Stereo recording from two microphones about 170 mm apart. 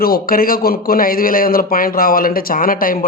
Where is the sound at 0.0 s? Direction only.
60° left (ahead or behind).